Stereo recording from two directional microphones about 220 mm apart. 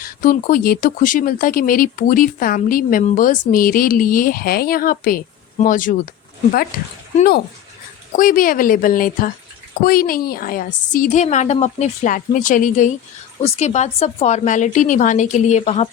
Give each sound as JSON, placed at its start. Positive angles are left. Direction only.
{"t": 0.0, "sound": "speech", "side_deg": 40}